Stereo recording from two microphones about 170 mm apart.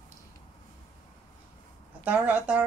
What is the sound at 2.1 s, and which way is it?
Speech, 5° right (ahead or behind).